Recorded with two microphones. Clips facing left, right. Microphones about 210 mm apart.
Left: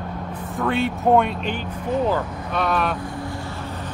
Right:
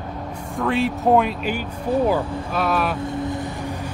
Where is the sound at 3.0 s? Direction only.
20° right (ahead or behind).